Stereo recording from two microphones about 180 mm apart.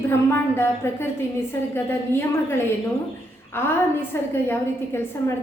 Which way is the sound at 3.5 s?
10° left (ahead or behind).